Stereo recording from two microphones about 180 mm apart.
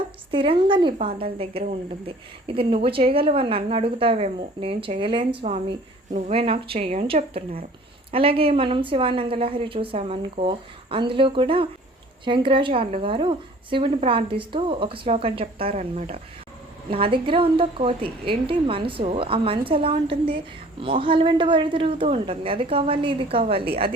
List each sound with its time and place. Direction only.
0.3 s a woman's voice: 30° right (ahead or behind)